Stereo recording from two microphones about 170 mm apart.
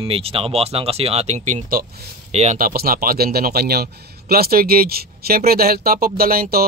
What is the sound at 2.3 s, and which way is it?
Speech, 45° right (ahead or behind).